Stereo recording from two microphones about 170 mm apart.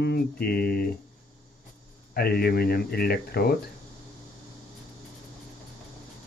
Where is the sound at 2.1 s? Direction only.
65° left (ahead or behind).